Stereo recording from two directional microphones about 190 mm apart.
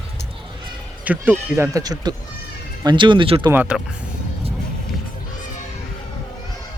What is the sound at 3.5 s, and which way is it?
Speech, 10° right (ahead or behind).